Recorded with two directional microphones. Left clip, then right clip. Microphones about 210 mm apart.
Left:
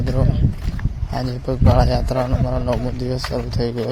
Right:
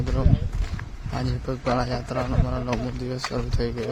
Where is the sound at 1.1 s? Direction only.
10° left (ahead or behind).